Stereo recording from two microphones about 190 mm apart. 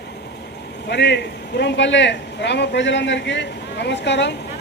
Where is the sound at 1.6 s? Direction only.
75° left (ahead or behind).